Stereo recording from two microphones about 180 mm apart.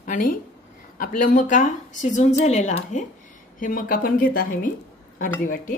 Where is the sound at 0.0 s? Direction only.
50° left (ahead or behind).